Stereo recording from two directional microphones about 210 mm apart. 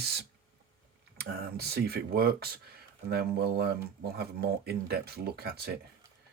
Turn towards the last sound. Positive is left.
turn(degrees=-50)  # may be behind; listen again after turning